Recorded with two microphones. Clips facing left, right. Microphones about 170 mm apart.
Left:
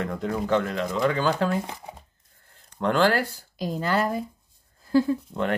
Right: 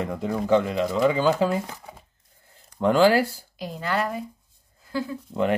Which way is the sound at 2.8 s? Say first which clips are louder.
Right 4 dB; 10° right (ahead or behind).